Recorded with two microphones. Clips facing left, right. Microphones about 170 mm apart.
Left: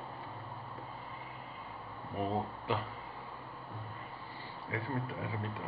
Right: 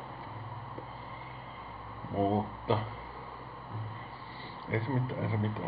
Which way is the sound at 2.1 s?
25° right (ahead or behind).